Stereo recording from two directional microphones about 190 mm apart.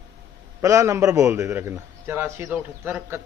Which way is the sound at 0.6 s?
15° right (ahead or behind).